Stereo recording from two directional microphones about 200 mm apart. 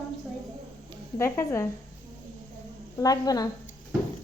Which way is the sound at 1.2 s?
15° left (ahead or behind).